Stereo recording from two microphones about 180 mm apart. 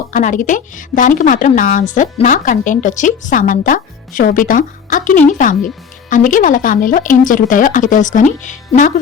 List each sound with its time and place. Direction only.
0.1 s a woman's voice: 45° left (ahead or behind)